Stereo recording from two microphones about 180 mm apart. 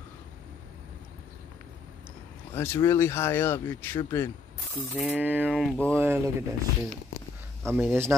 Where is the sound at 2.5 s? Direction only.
15° left (ahead or behind).